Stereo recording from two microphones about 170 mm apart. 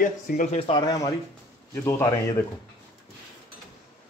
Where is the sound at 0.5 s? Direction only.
35° left (ahead or behind).